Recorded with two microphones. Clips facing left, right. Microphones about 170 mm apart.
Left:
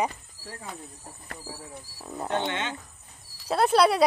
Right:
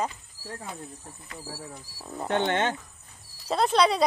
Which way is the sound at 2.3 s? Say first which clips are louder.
Right 4 dB; 50° right (ahead or behind).